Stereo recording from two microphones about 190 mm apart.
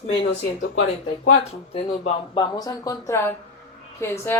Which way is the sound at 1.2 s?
35° left (ahead or behind).